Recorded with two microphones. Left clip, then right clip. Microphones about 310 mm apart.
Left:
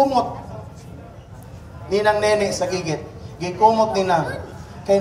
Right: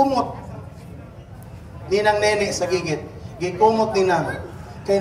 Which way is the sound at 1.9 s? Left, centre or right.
Centre.